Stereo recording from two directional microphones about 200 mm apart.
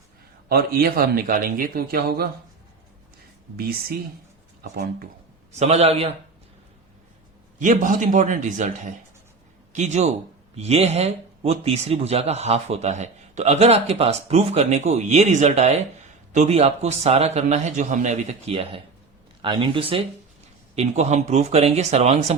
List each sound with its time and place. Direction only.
0.4 s a man's voice: 50° right (ahead or behind)
3.6 s a man's voice: 50° right (ahead or behind)
5.5 s a man's voice: 35° right (ahead or behind)
7.6 s a man's voice: 40° right (ahead or behind)